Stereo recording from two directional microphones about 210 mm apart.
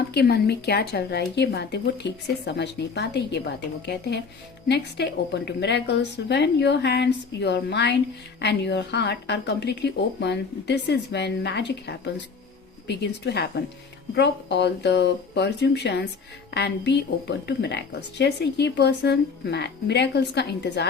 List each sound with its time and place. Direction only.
0.1 s a woman's voice: 50° left (ahead or behind)